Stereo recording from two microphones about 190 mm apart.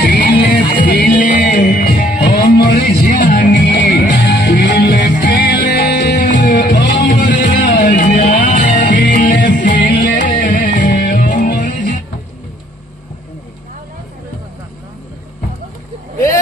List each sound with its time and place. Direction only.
0.0 s music: 55° left (ahead or behind)
3.5 s music: 60° left (ahead or behind); by 6.7 s 40° left (ahead or behind)
6.7 s music: 60° left (ahead or behind); by 12.0 s 40° left (ahead or behind)